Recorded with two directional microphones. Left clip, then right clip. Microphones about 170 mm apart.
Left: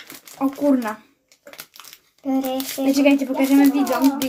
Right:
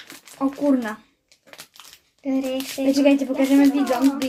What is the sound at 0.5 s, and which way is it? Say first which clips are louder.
Speech: left 2 dB; 20° left (ahead or behind).